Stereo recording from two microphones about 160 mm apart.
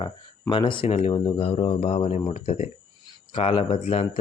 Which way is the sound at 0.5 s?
30° left (ahead or behind).